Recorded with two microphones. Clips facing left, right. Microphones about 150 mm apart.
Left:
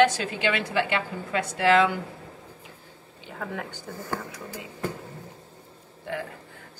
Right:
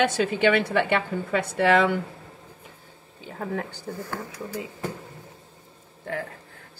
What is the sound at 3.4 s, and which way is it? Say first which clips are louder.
Speech: right 4 dB; 35° right (ahead or behind).